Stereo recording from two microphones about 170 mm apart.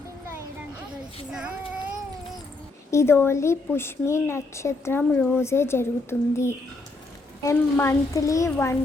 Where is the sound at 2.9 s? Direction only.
15° left (ahead or behind).